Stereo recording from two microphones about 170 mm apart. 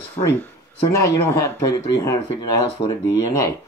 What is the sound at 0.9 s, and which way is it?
Speech, 15° left (ahead or behind).